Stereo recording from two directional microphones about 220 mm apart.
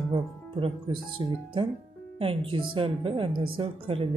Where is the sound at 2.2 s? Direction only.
25° right (ahead or behind).